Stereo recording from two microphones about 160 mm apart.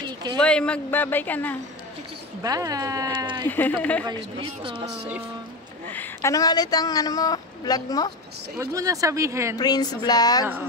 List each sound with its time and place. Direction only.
0.0 s a sound: 25° right (ahead or behind)
0.4 s speech: 5° left (ahead or behind)
2.4 s speech: 20° right (ahead or behind)
3.4 s speech: 10° left (ahead or behind)
4.0 s speech: 30° right (ahead or behind)
5.9 s speech: 10° left (ahead or behind)
6.3 s a woman's voice: 25° left (ahead or behind)
8.5 s speech: 20° right (ahead or behind)
9.6 s a woman's voice: 25° left (ahead or behind)